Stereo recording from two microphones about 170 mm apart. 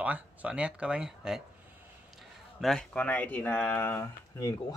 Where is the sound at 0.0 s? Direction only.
10° right (ahead or behind).